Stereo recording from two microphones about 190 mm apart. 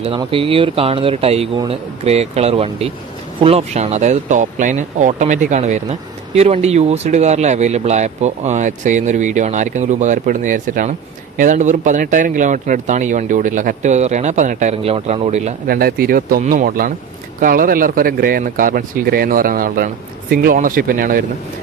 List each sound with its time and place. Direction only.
0.0 s speech: 30° right (ahead or behind)
15.7 s speech: 50° right (ahead or behind)